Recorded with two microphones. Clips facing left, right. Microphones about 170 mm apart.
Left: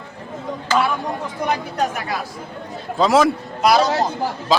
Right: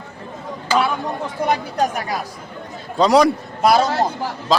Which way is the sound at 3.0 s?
Centre (ahead or behind).